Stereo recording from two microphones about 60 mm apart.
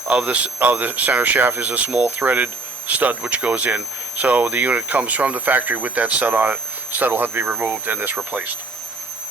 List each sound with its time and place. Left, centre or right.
0.1 s speech: right